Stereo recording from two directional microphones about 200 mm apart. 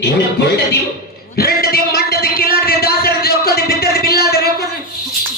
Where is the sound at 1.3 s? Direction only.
50° left (ahead or behind).